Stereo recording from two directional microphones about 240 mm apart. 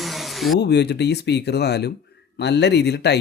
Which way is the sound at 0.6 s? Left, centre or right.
Left.